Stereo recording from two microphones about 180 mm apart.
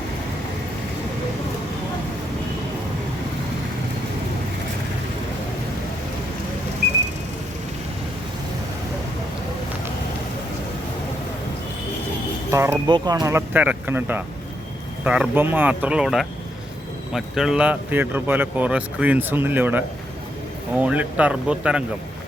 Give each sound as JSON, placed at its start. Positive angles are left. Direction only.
{"t": 12.5, "sound": "speech", "side_deg": -15}